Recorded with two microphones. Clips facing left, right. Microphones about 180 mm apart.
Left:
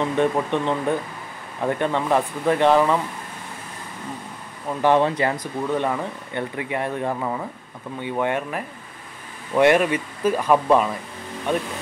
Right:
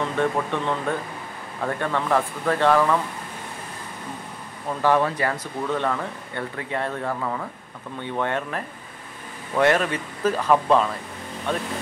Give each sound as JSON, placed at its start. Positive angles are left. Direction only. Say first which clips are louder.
{"t": 0.1, "sound": "speech", "louder": "left 3 dB", "side_deg": 20}
{"t": 4.8, "sound": "speech", "louder": "left 3 dB", "side_deg": 20}